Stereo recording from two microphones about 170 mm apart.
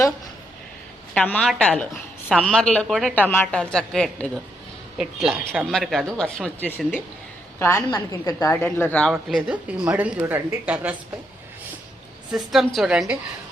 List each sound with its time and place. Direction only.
1.1 s a woman's voice: 5° left (ahead or behind)
5.5 s a woman's voice: centre (ahead or behind); by 8.5 s 20° left (ahead or behind)
8.6 s a woman's voice: 10° left (ahead or behind)
9.1 s speech: 5° right (ahead or behind)
12.3 s speech: centre (ahead or behind)